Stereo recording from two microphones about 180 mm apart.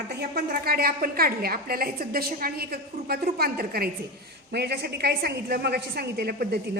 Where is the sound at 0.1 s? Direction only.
65° right (ahead or behind).